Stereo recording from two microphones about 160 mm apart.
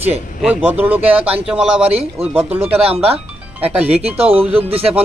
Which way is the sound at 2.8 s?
40° right (ahead or behind).